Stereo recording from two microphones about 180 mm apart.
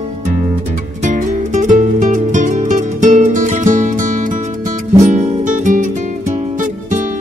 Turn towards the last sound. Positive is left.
turn(degrees=-45)  # may be behind; listen again after turning